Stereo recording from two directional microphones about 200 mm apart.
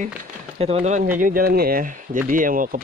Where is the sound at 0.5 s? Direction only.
30° right (ahead or behind).